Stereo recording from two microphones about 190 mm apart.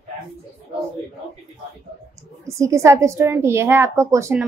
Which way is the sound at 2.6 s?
15° right (ahead or behind).